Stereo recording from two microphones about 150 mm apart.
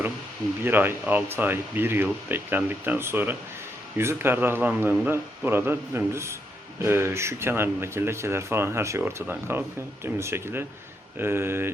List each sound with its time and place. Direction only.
0.6 s speech: 15° right (ahead or behind)